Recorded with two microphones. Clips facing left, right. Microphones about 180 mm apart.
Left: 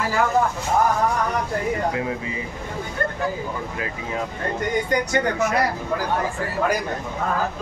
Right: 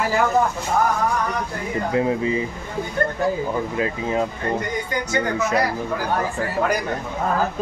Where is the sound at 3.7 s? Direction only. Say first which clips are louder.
Right 6 dB; 25° right (ahead or behind).